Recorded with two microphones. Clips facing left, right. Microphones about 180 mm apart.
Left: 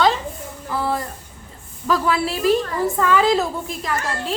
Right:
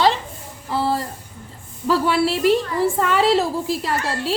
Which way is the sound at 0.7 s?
30° right (ahead or behind).